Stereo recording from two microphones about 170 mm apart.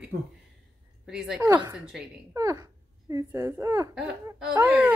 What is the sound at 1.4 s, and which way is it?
A woman's voice, 20° right (ahead or behind).